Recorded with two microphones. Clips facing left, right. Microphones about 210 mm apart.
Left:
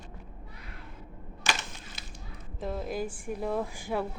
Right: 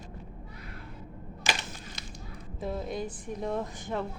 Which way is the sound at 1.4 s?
15° right (ahead or behind).